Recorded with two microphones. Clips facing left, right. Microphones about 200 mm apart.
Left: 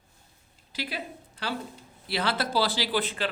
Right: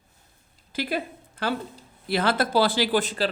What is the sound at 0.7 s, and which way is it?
A woman's voice, 50° right (ahead or behind).